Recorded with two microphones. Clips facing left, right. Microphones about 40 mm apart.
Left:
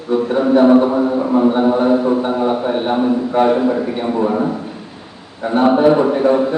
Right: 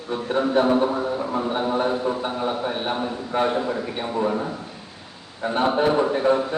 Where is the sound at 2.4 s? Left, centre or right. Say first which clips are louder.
Left 8 dB; left.